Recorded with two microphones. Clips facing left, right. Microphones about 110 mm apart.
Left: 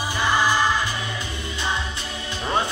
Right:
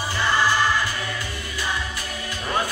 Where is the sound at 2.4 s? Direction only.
25° left (ahead or behind).